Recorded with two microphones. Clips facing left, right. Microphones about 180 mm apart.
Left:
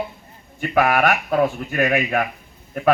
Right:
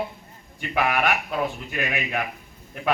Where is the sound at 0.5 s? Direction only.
45° left (ahead or behind).